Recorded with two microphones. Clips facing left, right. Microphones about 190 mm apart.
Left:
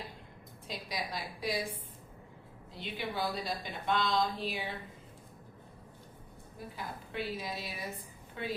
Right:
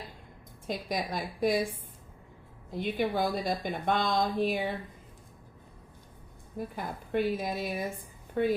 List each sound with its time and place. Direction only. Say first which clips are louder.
0.7 s speech: right 7 dB; 50° right (ahead or behind)
2.7 s speech: right 8 dB; 50° right (ahead or behind)
6.7 s speech: right 9 dB; 50° right (ahead or behind)